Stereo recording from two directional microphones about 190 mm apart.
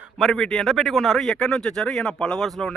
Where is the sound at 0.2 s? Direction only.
5° left (ahead or behind).